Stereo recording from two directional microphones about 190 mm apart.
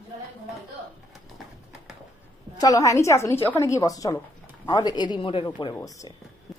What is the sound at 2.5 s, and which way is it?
A woman's voice, 20° left (ahead or behind).